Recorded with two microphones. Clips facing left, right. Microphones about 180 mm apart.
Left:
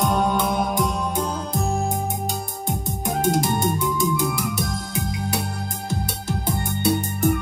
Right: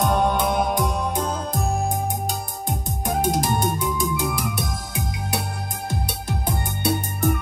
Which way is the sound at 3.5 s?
15° right (ahead or behind).